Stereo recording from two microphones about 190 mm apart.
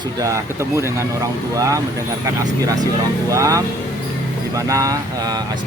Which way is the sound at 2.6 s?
20° right (ahead or behind).